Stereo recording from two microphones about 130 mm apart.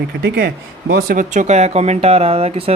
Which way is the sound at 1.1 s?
75° right (ahead or behind).